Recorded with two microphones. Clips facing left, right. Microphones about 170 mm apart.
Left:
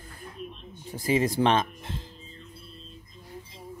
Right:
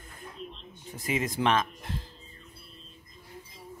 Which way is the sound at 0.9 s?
35° left (ahead or behind).